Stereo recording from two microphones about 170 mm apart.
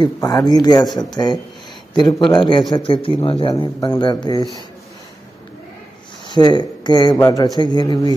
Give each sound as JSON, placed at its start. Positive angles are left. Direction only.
{"t": 0.0, "sound": "speech", "side_deg": 20}
{"t": 6.2, "sound": "speech", "side_deg": 25}